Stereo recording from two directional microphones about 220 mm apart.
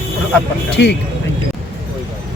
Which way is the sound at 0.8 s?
50° left (ahead or behind).